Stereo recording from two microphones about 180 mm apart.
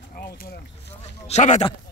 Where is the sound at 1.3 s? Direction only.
40° left (ahead or behind).